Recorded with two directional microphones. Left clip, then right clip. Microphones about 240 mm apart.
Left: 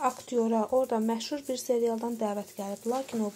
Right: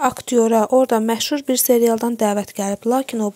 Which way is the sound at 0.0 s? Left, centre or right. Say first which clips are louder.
Right 11 dB; right.